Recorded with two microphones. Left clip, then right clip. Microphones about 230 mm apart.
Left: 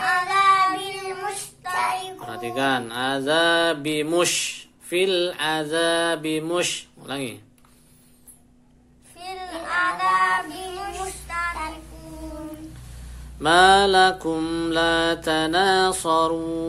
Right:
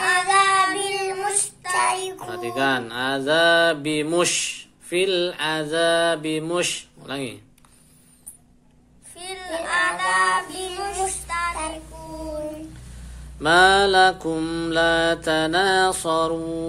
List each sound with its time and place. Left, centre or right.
0.0 s child singing: right
2.2 s mantra: centre
9.2 s child singing: right
12.9 s mantra: centre